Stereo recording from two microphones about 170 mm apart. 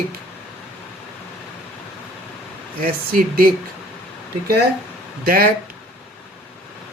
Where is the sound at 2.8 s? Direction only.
55° right (ahead or behind).